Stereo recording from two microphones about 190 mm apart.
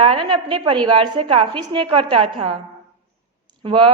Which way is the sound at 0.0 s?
30° right (ahead or behind).